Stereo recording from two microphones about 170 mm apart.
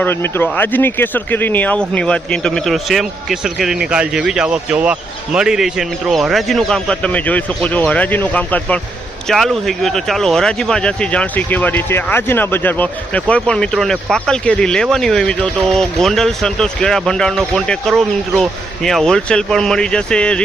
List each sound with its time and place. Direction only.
0.0 s speech: 15° left (ahead or behind)